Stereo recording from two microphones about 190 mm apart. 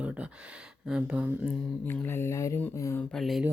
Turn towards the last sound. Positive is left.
turn(degrees=0)  # may be behind; listen again after turning